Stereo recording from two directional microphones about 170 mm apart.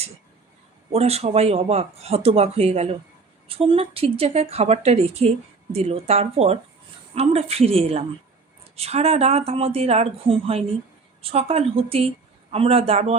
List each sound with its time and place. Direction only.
0.9 s a woman's voice: 35° right (ahead or behind)